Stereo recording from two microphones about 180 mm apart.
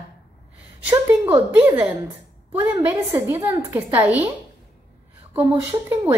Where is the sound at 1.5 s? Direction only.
10° right (ahead or behind).